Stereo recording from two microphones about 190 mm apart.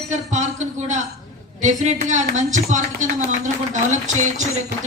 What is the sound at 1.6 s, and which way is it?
Speech, 40° right (ahead or behind).